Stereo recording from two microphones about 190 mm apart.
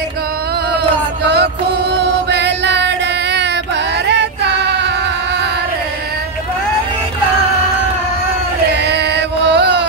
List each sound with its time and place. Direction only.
1.2 s music: 60° right (ahead or behind)
4.6 s a sound: 65° right (ahead or behind)
8.7 s chant: 60° right (ahead or behind)